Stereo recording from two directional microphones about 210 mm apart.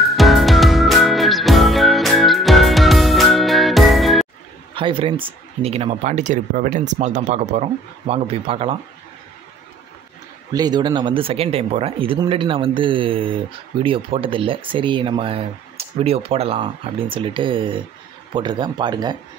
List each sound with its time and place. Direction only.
0.0 s music: centre (ahead or behind)
4.7 s speech: 25° right (ahead or behind)
10.5 s speech: 20° right (ahead or behind)